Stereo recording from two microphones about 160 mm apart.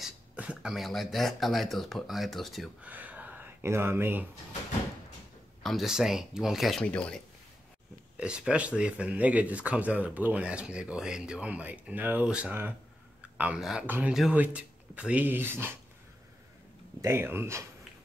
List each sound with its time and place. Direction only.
0.0 s speech: 5° right (ahead or behind)
5.6 s speech: centre (ahead or behind)
8.2 s speech: 5° right (ahead or behind)
17.0 s speech: 15° right (ahead or behind)